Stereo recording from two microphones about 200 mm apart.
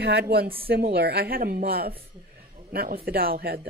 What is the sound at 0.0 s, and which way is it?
Speech, 55° right (ahead or behind).